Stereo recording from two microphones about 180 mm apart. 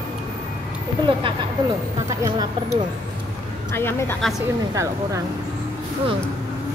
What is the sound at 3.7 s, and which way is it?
Speech, 10° left (ahead or behind).